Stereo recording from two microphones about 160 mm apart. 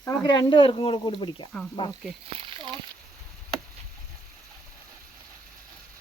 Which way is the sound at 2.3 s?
35° right (ahead or behind).